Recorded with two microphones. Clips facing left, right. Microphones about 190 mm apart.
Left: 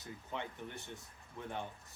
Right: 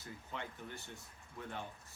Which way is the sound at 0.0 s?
20° left (ahead or behind).